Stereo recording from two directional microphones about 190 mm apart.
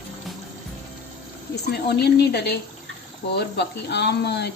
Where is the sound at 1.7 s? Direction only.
60° left (ahead or behind).